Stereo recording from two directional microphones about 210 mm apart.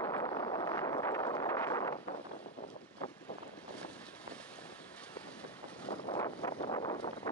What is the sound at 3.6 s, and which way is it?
Vehicle, 5° left (ahead or behind).